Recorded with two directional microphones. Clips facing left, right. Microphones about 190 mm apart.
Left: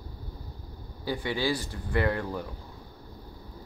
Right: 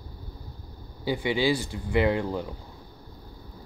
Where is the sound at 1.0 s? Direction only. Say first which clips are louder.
Right 4 dB; 20° right (ahead or behind).